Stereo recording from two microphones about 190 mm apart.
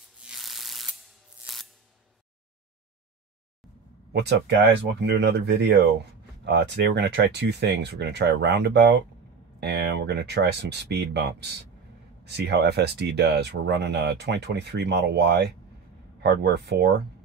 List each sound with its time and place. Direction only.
0.2 s shuffling cards: centre (ahead or behind)
1.4 s music: centre (ahead or behind)
4.1 s speech: 60° right (ahead or behind)